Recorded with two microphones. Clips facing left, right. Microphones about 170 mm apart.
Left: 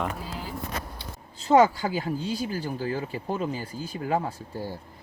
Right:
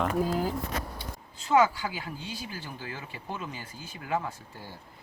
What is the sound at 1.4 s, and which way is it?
Speech, 40° left (ahead or behind).